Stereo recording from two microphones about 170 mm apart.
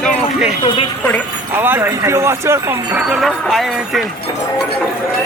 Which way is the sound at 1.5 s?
10° right (ahead or behind).